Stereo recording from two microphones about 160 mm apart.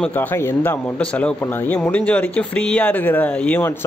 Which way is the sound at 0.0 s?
10° left (ahead or behind).